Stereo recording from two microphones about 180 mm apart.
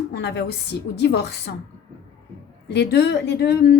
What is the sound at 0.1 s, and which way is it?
A woman's voice, 70° left (ahead or behind).